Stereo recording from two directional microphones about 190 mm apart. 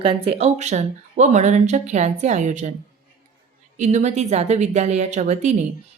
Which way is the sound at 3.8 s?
40° right (ahead or behind).